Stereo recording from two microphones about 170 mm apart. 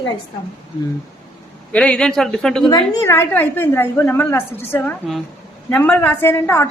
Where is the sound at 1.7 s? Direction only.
5° left (ahead or behind).